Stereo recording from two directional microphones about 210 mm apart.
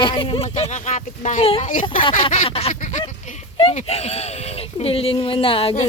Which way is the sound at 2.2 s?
30° left (ahead or behind).